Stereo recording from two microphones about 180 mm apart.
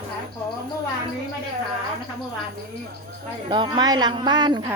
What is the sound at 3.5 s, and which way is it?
Speech, 25° right (ahead or behind).